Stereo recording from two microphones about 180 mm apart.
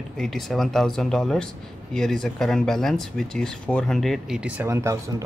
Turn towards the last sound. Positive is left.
turn(degrees=-15)  # may be behind; listen again after turning